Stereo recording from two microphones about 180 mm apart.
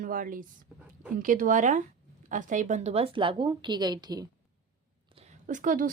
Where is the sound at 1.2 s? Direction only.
50° right (ahead or behind); by 4.3 s 20° right (ahead or behind).